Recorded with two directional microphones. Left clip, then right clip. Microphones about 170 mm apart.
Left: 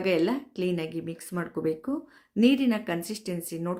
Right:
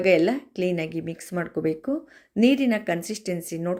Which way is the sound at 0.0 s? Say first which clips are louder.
Right 6 dB; 15° right (ahead or behind).